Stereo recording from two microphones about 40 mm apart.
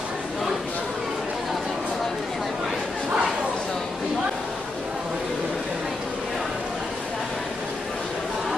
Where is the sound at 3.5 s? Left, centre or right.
Centre.